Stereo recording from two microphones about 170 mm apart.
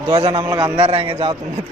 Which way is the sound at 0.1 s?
30° right (ahead or behind).